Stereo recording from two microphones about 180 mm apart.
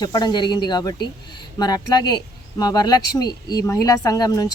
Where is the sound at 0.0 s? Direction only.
20° left (ahead or behind).